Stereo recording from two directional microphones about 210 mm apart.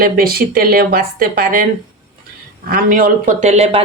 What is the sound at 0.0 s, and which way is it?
Speech, 45° right (ahead or behind).